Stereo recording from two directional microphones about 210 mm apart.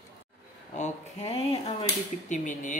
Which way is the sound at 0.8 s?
30° left (ahead or behind).